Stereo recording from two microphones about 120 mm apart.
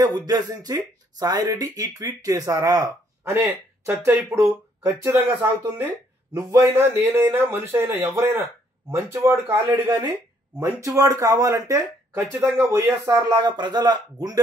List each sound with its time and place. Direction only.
0.0 s speech: 30° right (ahead or behind)
6.7 s speech: 20° right (ahead or behind)
9.8 s speech: 45° right (ahead or behind)
10.6 s speech: 25° right (ahead or behind)